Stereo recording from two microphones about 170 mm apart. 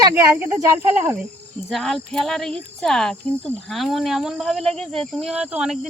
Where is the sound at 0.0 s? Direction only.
10° right (ahead or behind).